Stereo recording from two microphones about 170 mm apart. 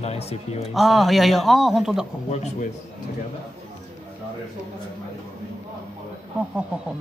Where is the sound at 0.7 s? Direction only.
Centre (ahead or behind).